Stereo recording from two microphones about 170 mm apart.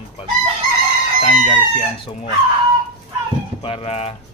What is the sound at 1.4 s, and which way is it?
Speech, 35° left (ahead or behind).